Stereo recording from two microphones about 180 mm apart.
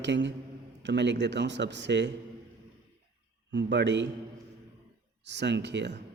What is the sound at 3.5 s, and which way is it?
Speech, 75° right (ahead or behind).